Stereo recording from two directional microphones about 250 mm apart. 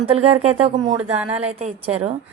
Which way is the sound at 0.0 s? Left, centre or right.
Right.